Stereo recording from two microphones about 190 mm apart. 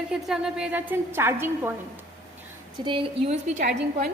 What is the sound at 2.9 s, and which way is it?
A woman's voice, 25° right (ahead or behind).